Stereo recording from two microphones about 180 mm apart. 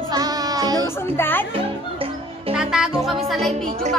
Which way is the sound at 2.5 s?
5° right (ahead or behind).